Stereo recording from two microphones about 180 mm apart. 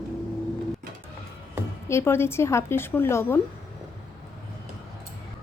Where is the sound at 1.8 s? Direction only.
15° left (ahead or behind).